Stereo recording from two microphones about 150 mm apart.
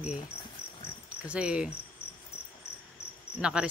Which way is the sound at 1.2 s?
10° right (ahead or behind).